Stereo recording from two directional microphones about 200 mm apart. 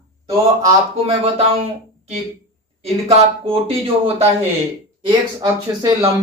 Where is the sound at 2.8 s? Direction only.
30° right (ahead or behind).